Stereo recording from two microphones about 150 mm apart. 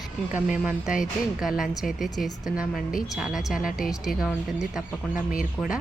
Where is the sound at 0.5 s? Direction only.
10° right (ahead or behind).